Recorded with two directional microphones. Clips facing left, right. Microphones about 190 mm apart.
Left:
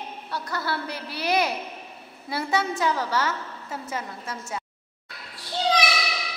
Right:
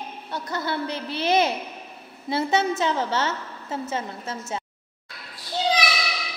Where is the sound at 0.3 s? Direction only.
20° right (ahead or behind).